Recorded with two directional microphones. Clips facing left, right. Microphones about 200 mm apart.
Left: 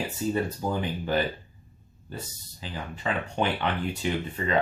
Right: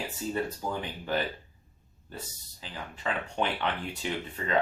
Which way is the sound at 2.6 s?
5° left (ahead or behind).